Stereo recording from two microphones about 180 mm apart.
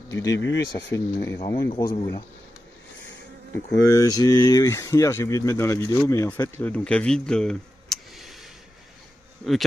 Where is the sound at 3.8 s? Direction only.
15° left (ahead or behind); by 8.5 s centre (ahead or behind).